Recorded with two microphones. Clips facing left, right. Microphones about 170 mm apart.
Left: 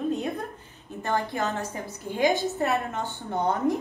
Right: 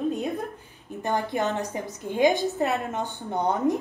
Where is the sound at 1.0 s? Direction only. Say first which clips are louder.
Right 2 dB; 20° right (ahead or behind).